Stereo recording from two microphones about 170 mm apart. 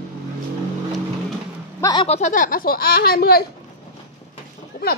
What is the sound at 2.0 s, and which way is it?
Speech, 40° left (ahead or behind).